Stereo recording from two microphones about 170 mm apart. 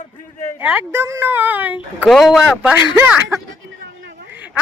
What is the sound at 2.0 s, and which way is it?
Speech, centre (ahead or behind).